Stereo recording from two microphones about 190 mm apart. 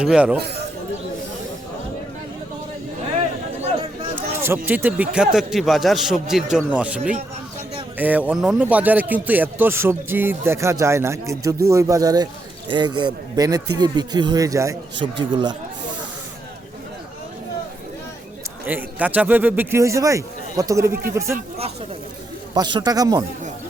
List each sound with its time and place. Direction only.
0.0 s speech: 5° right (ahead or behind)
4.1 s speech: 10° right (ahead or behind)
15.0 s speech: 30° right (ahead or behind)
18.6 s speech: 10° right (ahead or behind)
22.5 s speech: 20° right (ahead or behind)